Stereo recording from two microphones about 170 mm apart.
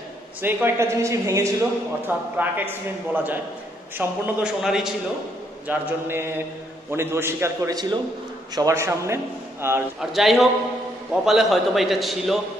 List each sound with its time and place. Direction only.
0.4 s a man's voice: 10° right (ahead or behind)
5.7 s a man's voice: 15° right (ahead or behind)
9.9 s a man's voice: centre (ahead or behind)